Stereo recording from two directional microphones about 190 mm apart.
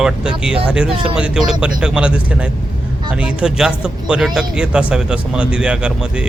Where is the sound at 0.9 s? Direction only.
30° right (ahead or behind).